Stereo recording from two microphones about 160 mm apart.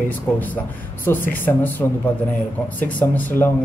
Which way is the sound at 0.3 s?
15° left (ahead or behind).